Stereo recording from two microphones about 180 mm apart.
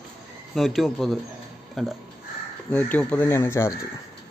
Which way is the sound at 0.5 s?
Centre (ahead or behind).